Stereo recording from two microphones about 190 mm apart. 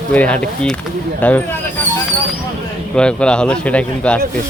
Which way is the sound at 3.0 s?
5° left (ahead or behind).